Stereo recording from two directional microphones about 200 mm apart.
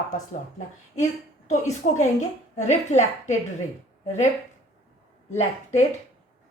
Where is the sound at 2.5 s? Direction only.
35° left (ahead or behind).